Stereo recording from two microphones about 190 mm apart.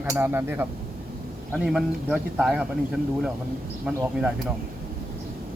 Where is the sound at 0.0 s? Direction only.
10° right (ahead or behind).